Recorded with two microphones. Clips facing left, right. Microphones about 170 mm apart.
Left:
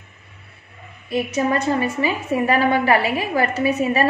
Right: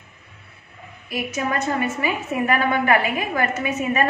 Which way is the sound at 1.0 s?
30° left (ahead or behind).